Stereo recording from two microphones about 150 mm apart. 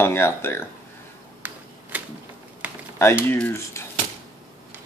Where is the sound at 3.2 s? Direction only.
15° left (ahead or behind).